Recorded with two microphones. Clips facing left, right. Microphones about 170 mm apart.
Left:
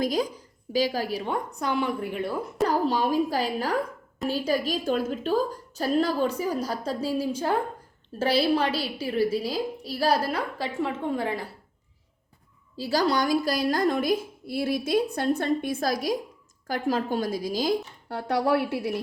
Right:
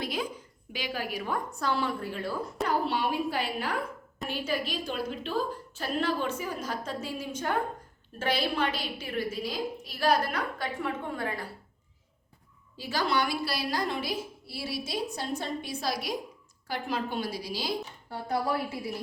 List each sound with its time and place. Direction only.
0.0 s a woman's voice: 40° left (ahead or behind)
1.5 s a woman's voice: 15° left (ahead or behind)
2.6 s a woman's voice: 40° left (ahead or behind); by 11.4 s 25° left (ahead or behind)
12.7 s a woman's voice: 40° left (ahead or behind)
18.1 s a woman's voice: 75° left (ahead or behind)